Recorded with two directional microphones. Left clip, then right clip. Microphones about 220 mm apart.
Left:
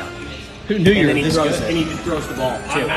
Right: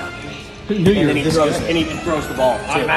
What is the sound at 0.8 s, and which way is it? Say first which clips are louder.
Speech: left 1 dB; 25° left (ahead or behind).